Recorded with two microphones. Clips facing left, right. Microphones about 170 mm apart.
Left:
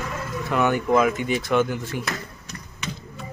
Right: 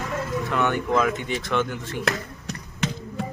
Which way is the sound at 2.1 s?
75° right (ahead or behind).